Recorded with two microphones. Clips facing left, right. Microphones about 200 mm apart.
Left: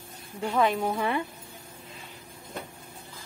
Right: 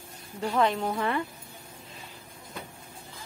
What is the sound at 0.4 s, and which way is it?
Speech, 5° left (ahead or behind).